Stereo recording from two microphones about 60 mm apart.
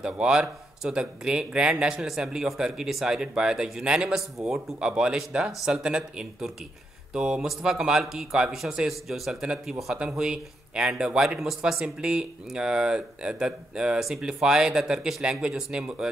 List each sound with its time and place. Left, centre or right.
0.0 s speech: centre
11.2 s speech: centre
11.6 s speech: centre